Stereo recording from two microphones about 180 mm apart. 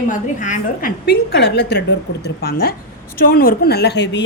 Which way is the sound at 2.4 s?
60° left (ahead or behind).